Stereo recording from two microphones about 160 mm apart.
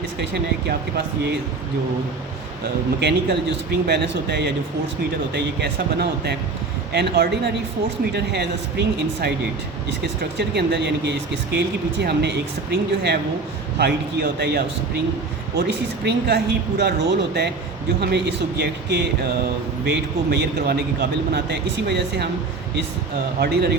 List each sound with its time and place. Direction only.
0.7 s speech: 80° right
3.0 s speech: 90° right
10.0 s speech: 90° right
23.4 s speech: 90° right